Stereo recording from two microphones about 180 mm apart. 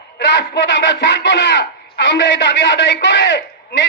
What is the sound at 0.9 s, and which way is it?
A man's voice, 80° left.